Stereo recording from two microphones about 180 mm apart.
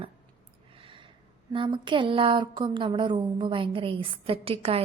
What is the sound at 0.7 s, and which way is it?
Gasp, 30° right (ahead or behind).